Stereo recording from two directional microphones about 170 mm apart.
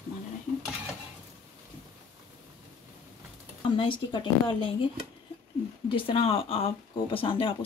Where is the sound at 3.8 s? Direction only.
30° left (ahead or behind).